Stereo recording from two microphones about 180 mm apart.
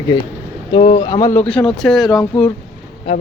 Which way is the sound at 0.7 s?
35° left (ahead or behind).